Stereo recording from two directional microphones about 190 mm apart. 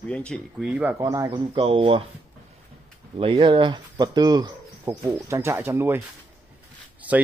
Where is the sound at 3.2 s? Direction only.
30° right (ahead or behind); by 6.0 s 10° right (ahead or behind).